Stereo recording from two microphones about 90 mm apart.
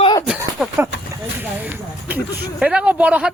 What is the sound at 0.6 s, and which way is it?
Speech, 5° right (ahead or behind).